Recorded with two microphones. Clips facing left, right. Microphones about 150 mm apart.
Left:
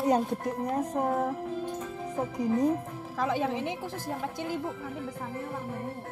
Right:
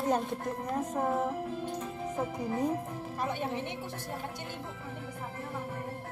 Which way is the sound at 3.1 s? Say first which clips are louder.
Left 6 dB; 90° left.